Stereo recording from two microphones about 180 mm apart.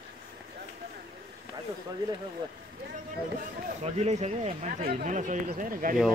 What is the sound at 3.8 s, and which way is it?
Speech, 40° right (ahead or behind).